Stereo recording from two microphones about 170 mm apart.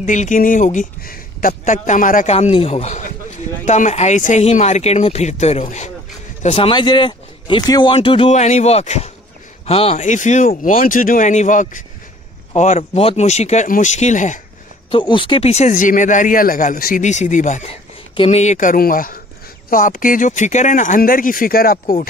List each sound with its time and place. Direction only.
0.0 s speech: 50° left (ahead or behind)
1.5 s speech: 45° left (ahead or behind)
2.3 s speech: 35° left (ahead or behind)
14.9 s speech: 30° left (ahead or behind); by 21.9 s 60° left (ahead or behind)